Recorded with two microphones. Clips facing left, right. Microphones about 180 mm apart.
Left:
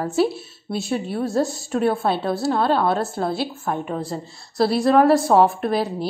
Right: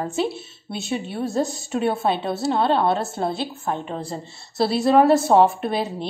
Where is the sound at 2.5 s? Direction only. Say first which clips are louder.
Even; 20° right (ahead or behind).